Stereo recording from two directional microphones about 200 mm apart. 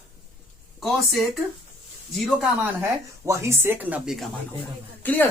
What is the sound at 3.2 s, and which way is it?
Speech, 15° right (ahead or behind).